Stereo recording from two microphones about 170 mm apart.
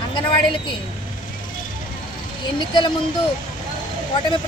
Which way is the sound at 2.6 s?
25° left (ahead or behind).